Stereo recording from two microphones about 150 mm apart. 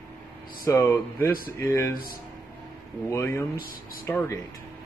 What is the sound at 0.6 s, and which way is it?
Speech, 15° left (ahead or behind).